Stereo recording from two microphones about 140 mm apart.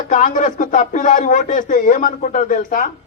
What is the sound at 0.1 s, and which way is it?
A man's voice, 70° left (ahead or behind).